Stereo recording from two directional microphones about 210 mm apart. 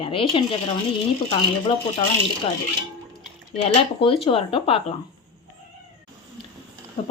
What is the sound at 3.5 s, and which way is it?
Speech, 25° left (ahead or behind).